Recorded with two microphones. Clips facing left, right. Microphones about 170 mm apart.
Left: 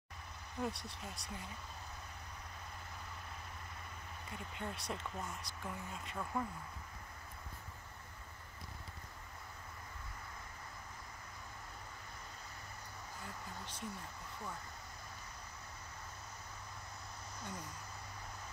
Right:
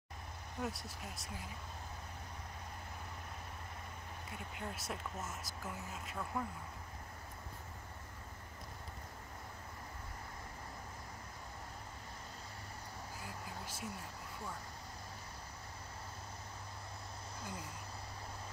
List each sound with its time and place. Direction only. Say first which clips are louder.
0.6 s speech: left 1 dB; 5° right (ahead or behind)
4.6 s speech: left 1 dB; 5° right (ahead or behind)
13.2 s a sound: even; 5° right (ahead or behind)